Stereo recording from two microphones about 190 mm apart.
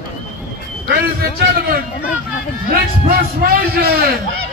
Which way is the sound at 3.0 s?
50° right (ahead or behind).